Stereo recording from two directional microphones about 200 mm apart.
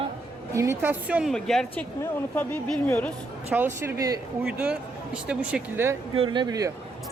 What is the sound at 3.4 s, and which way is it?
Speech, 10° right (ahead or behind).